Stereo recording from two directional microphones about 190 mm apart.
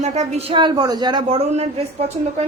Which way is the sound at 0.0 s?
35° right (ahead or behind).